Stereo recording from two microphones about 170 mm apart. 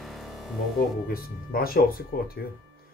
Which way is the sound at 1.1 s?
60° left (ahead or behind).